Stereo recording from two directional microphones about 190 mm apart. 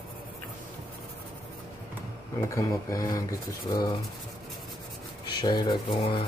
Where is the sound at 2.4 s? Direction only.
15° left (ahead or behind).